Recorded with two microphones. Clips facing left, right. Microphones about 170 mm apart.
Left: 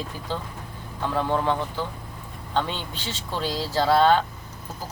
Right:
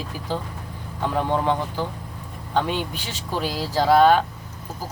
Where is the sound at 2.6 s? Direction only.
15° right (ahead or behind).